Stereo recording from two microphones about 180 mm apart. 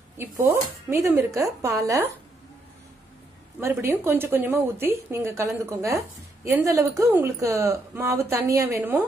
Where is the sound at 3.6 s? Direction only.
15° right (ahead or behind).